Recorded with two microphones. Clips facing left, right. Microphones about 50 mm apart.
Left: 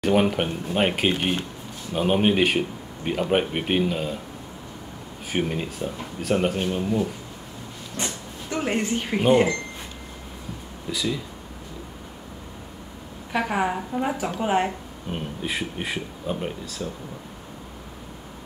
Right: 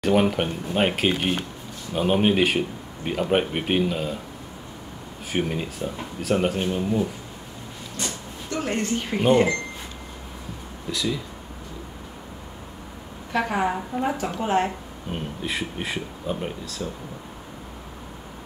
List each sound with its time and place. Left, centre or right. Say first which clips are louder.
0.0 s speech: even; centre
5.3 s speech: even; centre
8.0 s speech: left 1 dB; centre
10.9 s speech: even; centre
13.3 s speech: even; centre